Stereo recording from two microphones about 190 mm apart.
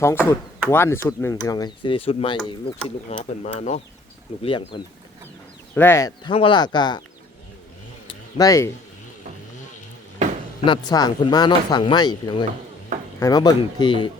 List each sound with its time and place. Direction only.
0.0 s speech: 10° left (ahead or behind)
5.7 s speech: 10° left (ahead or behind)
8.0 s a sound: 20° left (ahead or behind)
10.7 s speech: 20° left (ahead or behind)